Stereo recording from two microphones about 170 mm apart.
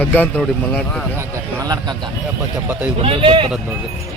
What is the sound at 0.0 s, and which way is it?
Speech, 10° left (ahead or behind).